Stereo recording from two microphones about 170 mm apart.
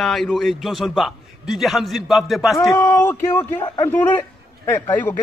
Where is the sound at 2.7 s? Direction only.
15° left (ahead or behind).